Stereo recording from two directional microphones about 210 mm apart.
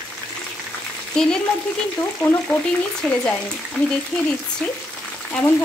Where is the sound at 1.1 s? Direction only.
5° left (ahead or behind).